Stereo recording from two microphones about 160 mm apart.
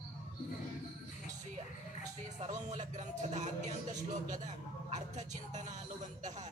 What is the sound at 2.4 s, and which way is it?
Speech, 50° right (ahead or behind).